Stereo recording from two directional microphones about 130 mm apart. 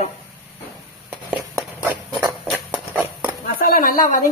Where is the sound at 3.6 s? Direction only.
90° left.